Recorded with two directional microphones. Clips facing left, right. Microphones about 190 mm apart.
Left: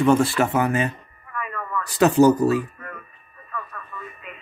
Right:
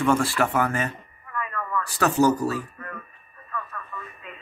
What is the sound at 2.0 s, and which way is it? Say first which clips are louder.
Speech: left 6 dB; 20° left (ahead or behind).